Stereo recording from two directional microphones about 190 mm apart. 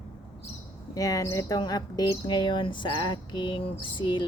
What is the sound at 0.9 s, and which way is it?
Speech, 20° left (ahead or behind).